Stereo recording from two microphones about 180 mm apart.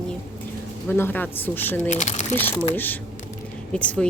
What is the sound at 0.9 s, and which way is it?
Speech, 10° left (ahead or behind).